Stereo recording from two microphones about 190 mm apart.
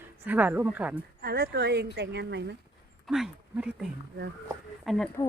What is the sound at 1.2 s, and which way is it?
Speech, 55° right (ahead or behind).